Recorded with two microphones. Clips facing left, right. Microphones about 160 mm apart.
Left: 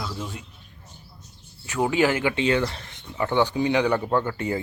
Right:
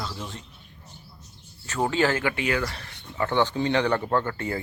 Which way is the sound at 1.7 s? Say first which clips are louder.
Left 2 dB; 10° left (ahead or behind).